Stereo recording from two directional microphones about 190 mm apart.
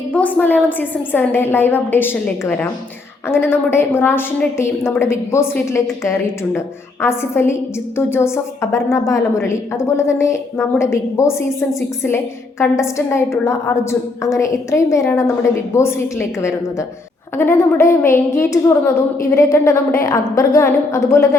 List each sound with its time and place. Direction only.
0.1 s a woman's voice: 5° left (ahead or behind)